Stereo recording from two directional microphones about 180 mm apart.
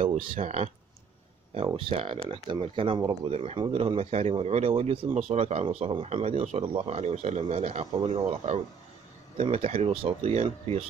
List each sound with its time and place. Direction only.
0.0 s speech: 40° right (ahead or behind)
1.7 s speech: 30° right (ahead or behind)